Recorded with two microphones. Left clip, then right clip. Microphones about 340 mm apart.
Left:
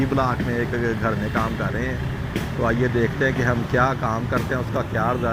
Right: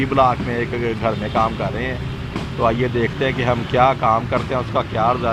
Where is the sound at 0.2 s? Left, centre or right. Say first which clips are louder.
Right 6 dB; centre.